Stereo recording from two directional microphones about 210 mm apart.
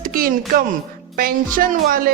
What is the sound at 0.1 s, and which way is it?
Speech, 45° right (ahead or behind).